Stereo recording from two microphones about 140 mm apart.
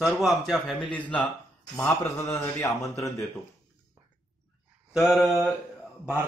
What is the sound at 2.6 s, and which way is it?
Speech, 20° left (ahead or behind).